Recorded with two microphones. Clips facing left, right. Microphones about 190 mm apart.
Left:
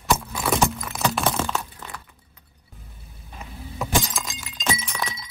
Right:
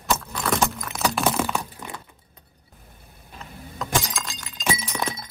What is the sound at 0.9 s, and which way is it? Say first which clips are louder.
Music: right 1 dB; centre (ahead or behind).